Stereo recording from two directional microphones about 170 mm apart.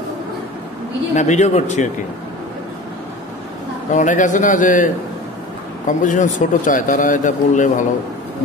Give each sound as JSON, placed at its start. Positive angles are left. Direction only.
{"t": 1.1, "sound": "speech", "side_deg": 45}
{"t": 3.9, "sound": "speech", "side_deg": 45}